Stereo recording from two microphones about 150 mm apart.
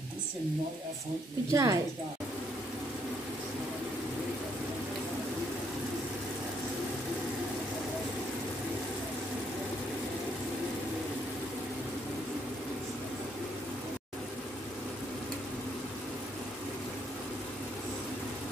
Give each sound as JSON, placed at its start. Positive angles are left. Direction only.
{"t": 1.5, "sound": "speech", "side_deg": -20}